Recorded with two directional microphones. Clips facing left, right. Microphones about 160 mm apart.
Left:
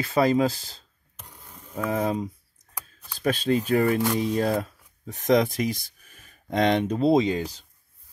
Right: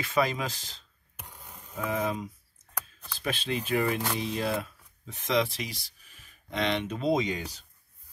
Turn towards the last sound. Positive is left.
turn(degrees=35)  # may be behind; listen again after turning